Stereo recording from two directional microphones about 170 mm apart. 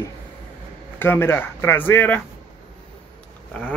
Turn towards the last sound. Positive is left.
turn(degrees=5)  # may be behind; listen again after turning